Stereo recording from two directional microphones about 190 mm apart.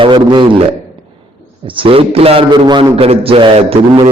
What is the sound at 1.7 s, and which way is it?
A man's voice, 30° right (ahead or behind).